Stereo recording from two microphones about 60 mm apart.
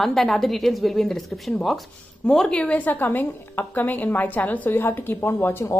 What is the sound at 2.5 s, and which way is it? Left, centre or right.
A woman's voice, centre.